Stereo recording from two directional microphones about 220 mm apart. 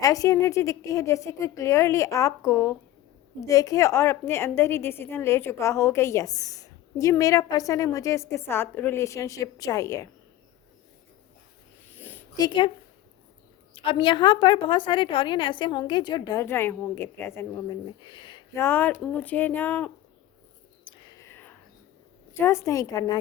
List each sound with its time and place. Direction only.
0.0 s a woman's voice: 15° left (ahead or behind)
11.9 s a sound: 10° left (ahead or behind)
13.7 s a woman's voice: 20° left (ahead or behind)
18.0 s a sound: 20° left (ahead or behind)
18.6 s a woman's voice: 10° left (ahead or behind)
21.2 s whispering: 10° left (ahead or behind)
22.4 s a woman's voice: 10° left (ahead or behind)